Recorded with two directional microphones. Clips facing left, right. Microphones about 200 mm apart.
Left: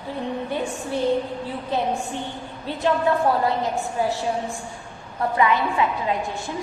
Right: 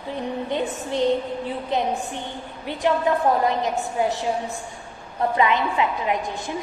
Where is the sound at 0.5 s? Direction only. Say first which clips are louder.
Right 3 dB; 20° right (ahead or behind).